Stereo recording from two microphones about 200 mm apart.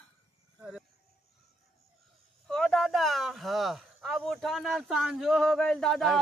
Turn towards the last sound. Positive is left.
turn(degrees=0)  # may be behind; listen again after turning